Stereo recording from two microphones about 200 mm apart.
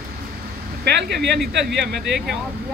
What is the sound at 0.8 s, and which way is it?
Speech, 55° right (ahead or behind).